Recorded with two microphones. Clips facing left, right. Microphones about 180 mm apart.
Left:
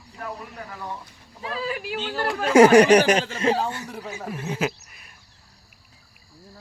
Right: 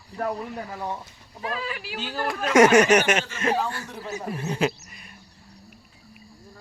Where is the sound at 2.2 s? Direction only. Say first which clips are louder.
Left 3 dB; 30° left (ahead or behind).